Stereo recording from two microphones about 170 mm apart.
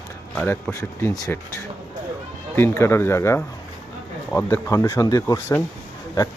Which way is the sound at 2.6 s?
15° left (ahead or behind).